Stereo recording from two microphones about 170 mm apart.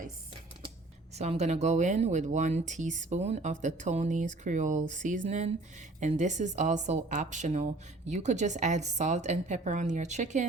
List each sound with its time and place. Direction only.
1.1 s a woman's voice: 40° right (ahead or behind)